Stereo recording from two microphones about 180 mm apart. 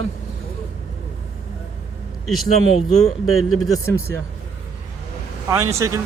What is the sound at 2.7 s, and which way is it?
Speech, 40° left (ahead or behind).